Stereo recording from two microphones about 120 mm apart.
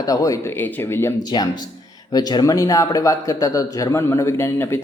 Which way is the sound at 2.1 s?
35° left (ahead or behind).